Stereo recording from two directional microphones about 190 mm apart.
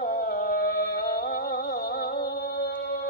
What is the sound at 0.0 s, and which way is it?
Music, 50° left (ahead or behind).